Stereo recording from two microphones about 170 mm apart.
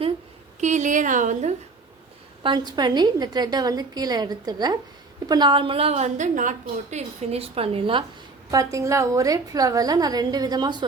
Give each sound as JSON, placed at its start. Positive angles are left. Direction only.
{"t": 0.6, "sound": "a sound", "side_deg": -45}
{"t": 2.4, "sound": "a woman's voice", "side_deg": -25}
{"t": 8.4, "sound": "a woman's voice", "side_deg": -20}